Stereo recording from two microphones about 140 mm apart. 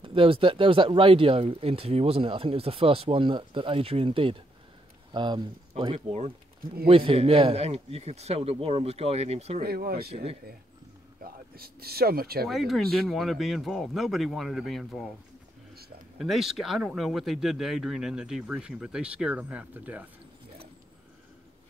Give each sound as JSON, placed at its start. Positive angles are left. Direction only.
{"t": 0.0, "sound": "speech", "side_deg": -40}
{"t": 5.9, "sound": "a man's voice", "side_deg": -50}
{"t": 9.6, "sound": "speech", "side_deg": -90}
{"t": 11.2, "sound": "speech", "side_deg": -90}
{"t": 12.4, "sound": "speech", "side_deg": 0}
{"t": 16.2, "sound": "speech", "side_deg": 0}